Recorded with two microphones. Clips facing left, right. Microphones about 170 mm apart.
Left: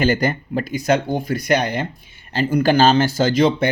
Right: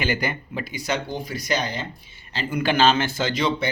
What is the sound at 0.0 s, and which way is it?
Speech, 40° left (ahead or behind).